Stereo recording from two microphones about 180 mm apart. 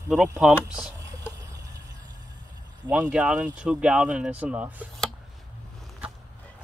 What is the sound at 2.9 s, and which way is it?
Speech, 5° right (ahead or behind).